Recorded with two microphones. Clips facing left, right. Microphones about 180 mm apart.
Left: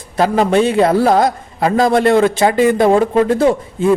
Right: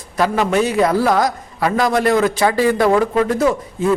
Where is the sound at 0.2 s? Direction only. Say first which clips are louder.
Left 4 dB; 30° left (ahead or behind).